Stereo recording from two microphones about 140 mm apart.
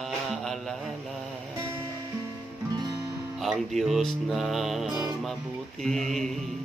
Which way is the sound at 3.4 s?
Centre (ahead or behind).